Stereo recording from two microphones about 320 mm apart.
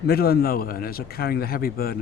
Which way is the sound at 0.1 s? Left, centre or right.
Left.